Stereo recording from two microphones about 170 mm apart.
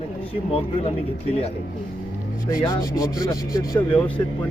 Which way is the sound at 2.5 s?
20° left (ahead or behind).